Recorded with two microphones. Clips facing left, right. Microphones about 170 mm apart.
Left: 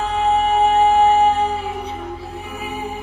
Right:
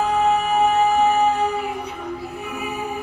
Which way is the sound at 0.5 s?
30° left (ahead or behind).